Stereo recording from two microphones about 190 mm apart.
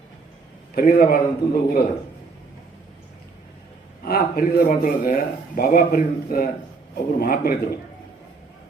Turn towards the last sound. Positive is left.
turn(degrees=55)  # may be behind; listen again after turning